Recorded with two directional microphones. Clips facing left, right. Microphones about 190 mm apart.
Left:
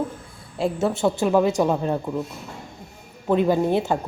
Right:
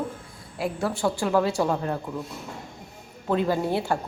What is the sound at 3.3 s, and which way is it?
Speech, 20° left (ahead or behind).